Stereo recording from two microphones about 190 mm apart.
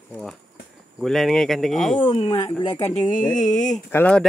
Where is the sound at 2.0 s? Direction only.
25° left (ahead or behind).